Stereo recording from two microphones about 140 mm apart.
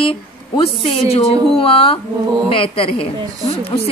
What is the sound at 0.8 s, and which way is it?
A woman's voice, 45° left (ahead or behind).